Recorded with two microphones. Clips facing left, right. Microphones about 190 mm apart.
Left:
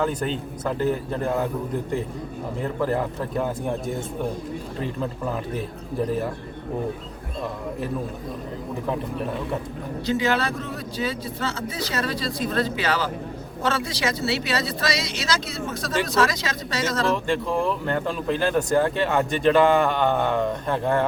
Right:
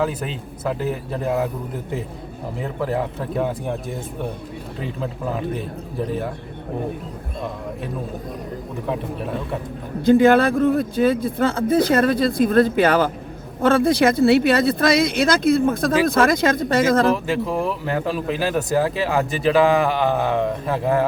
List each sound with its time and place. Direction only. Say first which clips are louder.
0.0 s speech: right 1 dB; 5° right (ahead or behind)
2.6 s speech: right 1 dB; centre (ahead or behind)
8.9 s speech: right 2 dB; centre (ahead or behind)
10.1 s speech: right 10 dB; 55° right (ahead or behind)
17.2 s speech: right 1 dB; 5° right (ahead or behind)